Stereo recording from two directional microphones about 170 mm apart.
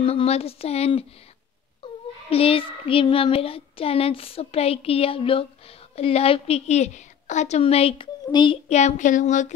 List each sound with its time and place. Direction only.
0.0 s a child's voice: 35° left (ahead or behind)
2.2 s a child's voice: 35° left (ahead or behind)
8.6 s speech: 40° left (ahead or behind)